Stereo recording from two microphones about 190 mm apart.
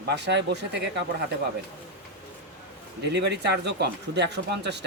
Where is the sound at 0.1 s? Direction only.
65° right (ahead or behind).